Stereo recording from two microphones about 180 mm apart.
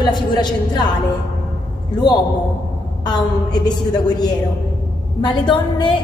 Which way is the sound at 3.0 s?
25° left (ahead or behind).